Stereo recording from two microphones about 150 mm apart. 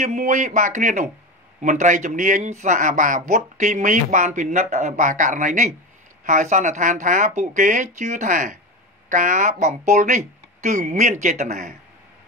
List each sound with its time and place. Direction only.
0.0 s a man's voice: 60° right (ahead or behind)